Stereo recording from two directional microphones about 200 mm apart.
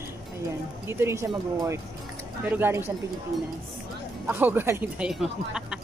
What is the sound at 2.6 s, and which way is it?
Speech, 10° right (ahead or behind).